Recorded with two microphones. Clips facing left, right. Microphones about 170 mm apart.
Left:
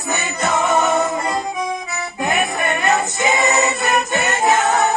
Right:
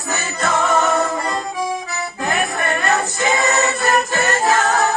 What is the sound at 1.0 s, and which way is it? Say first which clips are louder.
Music: left 1 dB; 20° left (ahead or behind).